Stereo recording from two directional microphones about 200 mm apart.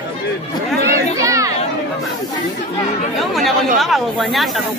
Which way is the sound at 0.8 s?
15° right (ahead or behind).